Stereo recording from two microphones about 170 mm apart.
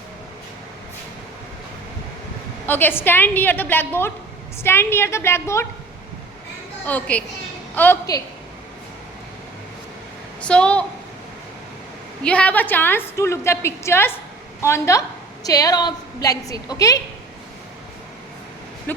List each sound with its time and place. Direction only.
2.6 s a woman's voice: 10° left (ahead or behind)
6.8 s a woman's voice: 10° left (ahead or behind)
10.4 s a woman's voice: 5° left (ahead or behind)
12.2 s a woman's voice: 5° left (ahead or behind)
18.9 s a sound: 10° left (ahead or behind)